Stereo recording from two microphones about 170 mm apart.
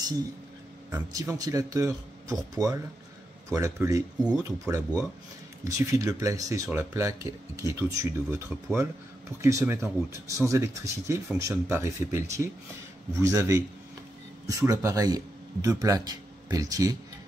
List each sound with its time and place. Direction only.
0.9 s a man's voice: 20° right (ahead or behind)